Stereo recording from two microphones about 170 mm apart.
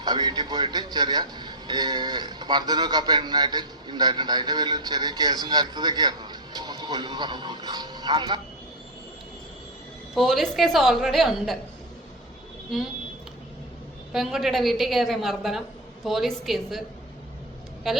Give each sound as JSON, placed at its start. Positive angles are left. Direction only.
{"t": 0.0, "sound": "a man's voice", "side_deg": -25}
{"t": 10.2, "sound": "a woman's voice", "side_deg": 0}
{"t": 14.1, "sound": "a woman's voice", "side_deg": 0}
{"t": 17.9, "sound": "a woman's voice", "side_deg": 0}